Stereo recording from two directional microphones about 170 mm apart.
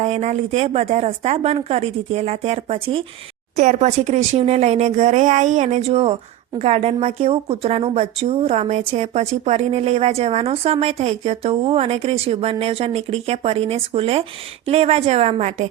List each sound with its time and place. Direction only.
0.0 s speech: 40° right (ahead or behind)